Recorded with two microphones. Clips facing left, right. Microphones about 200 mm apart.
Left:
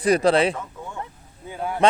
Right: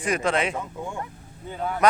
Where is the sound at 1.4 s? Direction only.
10° left (ahead or behind).